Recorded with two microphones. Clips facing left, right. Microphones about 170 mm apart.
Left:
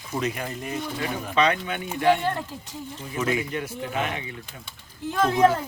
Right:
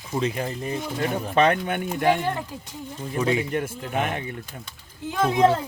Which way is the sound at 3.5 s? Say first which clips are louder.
Right 3 dB; 50° right (ahead or behind).